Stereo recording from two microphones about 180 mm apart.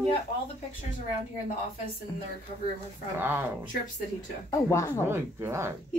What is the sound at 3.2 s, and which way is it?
Speech, 10° right (ahead or behind).